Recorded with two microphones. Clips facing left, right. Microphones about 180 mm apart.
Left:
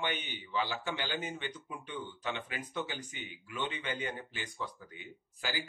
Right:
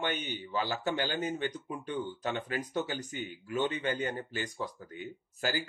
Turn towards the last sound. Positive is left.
turn(degrees=-45)  # may be behind; listen again after turning